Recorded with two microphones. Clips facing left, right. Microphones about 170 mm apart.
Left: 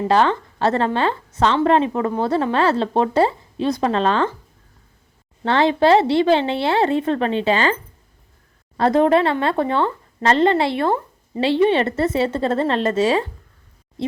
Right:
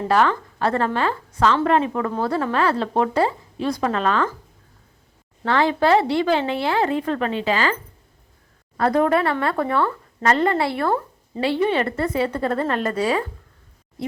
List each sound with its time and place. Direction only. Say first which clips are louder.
0.1 s a woman's voice: left 1 dB; 25° left (ahead or behind)
5.5 s a woman's voice: left 3 dB; 25° left (ahead or behind)
8.8 s a woman's voice: left 3 dB; 25° left (ahead or behind)